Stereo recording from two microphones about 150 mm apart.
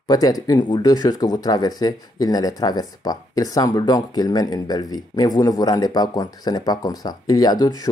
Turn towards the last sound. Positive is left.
turn(degrees=25)  # may be behind; listen again after turning